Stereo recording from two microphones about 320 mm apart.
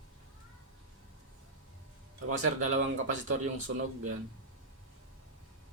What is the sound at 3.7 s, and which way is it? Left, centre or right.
Speech, right.